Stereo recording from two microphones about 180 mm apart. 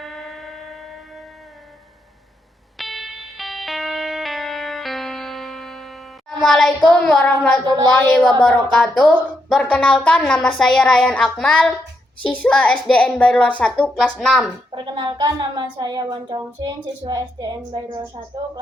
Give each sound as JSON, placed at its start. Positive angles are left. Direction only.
{"t": 0.0, "sound": "train", "side_deg": 0}
{"t": 2.7, "sound": "music", "side_deg": 0}
{"t": 6.4, "sound": "child singing", "side_deg": 5}
{"t": 6.9, "sound": "a woman's voice", "side_deg": 5}
{"t": 14.8, "sound": "speech", "side_deg": -25}
{"t": 17.7, "sound": "a woman's voice", "side_deg": -30}